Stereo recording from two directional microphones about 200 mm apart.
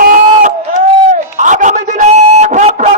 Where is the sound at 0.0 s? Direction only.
45° right (ahead or behind).